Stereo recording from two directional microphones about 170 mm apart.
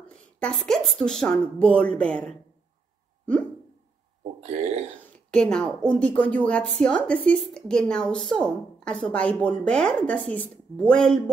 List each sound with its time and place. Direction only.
0.4 s speech: 5° left (ahead or behind)
4.2 s speech: 40° right (ahead or behind)
5.3 s speech: 5° left (ahead or behind)